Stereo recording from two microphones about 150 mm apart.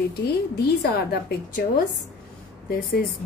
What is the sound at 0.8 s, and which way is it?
A woman's voice, 90° left.